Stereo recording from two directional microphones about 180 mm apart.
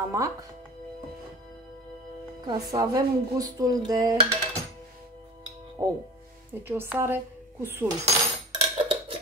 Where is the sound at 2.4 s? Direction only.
20° right (ahead or behind).